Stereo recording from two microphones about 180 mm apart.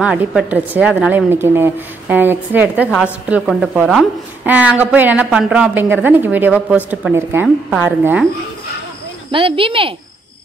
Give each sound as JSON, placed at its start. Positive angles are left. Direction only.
{"t": 0.0, "sound": "a woman's voice", "side_deg": -5}
{"t": 9.3, "sound": "speech", "side_deg": -30}